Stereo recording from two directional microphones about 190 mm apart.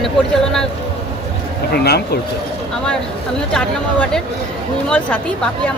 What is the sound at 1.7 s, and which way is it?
Speech, 60° left (ahead or behind).